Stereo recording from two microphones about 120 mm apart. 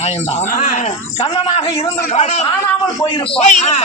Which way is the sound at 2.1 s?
65° left (ahead or behind).